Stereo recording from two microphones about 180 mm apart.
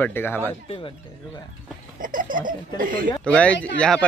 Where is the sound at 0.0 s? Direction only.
10° left (ahead or behind).